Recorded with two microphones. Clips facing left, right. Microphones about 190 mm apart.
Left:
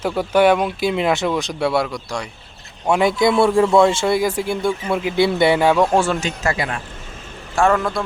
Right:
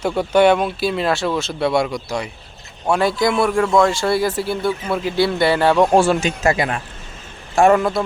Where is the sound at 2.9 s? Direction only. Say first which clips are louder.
Left 1 dB; 20° left (ahead or behind).